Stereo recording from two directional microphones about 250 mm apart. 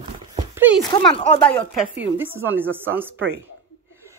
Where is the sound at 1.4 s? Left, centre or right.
Centre.